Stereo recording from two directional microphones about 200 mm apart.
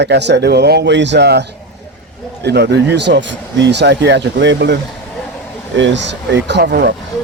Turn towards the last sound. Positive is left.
turn(degrees=-60)  # may be behind; listen again after turning